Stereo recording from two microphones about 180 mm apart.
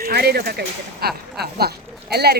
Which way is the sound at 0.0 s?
60° right (ahead or behind).